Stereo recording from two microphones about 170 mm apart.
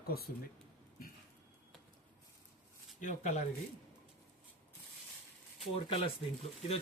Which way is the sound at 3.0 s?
45° left (ahead or behind).